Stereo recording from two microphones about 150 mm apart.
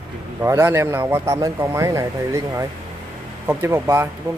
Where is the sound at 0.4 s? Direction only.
15° right (ahead or behind).